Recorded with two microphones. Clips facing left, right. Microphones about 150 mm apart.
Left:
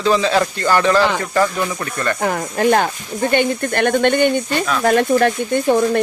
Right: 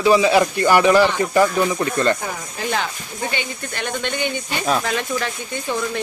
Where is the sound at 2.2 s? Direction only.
60° left (ahead or behind).